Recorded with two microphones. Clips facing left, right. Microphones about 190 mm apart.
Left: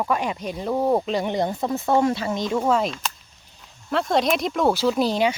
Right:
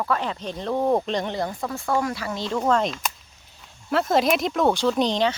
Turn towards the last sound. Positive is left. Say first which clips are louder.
# left 1 dB
turn(degrees=10)  # may be behind; listen again after turning